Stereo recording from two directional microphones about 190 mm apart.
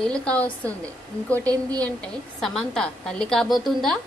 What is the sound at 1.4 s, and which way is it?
Speech, 20° right (ahead or behind).